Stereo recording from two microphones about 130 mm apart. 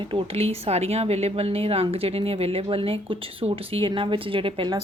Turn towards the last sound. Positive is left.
turn(degrees=-40)  # may be behind; listen again after turning